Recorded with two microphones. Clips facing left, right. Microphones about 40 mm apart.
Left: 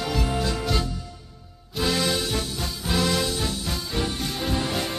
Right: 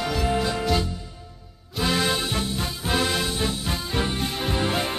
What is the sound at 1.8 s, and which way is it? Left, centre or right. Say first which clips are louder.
Music: right 1 dB; centre.